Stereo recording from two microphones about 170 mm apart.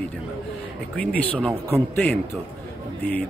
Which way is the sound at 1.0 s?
10° left (ahead or behind).